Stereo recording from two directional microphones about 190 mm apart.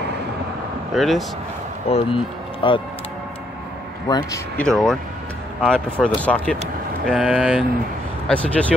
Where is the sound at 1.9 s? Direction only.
30° left (ahead or behind).